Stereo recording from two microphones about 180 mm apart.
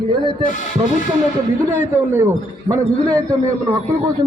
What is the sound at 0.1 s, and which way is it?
Speech, 25° right (ahead or behind).